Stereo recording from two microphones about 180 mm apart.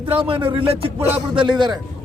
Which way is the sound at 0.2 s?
30° right (ahead or behind).